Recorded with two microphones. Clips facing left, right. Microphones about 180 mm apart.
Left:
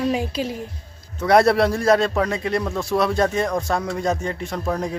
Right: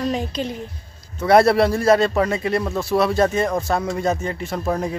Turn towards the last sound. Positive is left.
turn(degrees=-5)  # may be behind; listen again after turning